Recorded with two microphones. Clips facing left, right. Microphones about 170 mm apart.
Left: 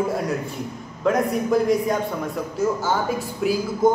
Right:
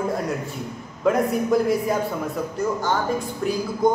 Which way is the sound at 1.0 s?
Centre (ahead or behind).